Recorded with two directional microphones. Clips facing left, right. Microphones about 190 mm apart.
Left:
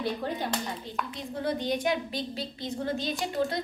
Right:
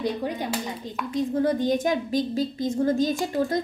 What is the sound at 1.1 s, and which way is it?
A woman's voice, 45° right (ahead or behind).